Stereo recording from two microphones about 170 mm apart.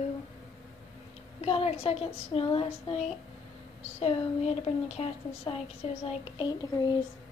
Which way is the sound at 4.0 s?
35° left (ahead or behind).